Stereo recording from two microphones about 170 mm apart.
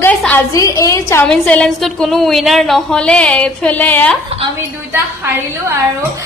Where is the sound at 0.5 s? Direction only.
20° left (ahead or behind).